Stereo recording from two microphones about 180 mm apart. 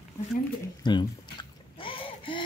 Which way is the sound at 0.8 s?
25° left (ahead or behind).